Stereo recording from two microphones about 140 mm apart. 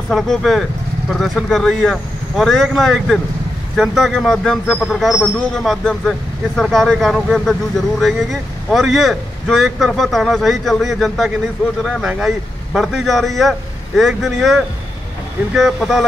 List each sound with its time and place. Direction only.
0.1 s speech: centre (ahead or behind)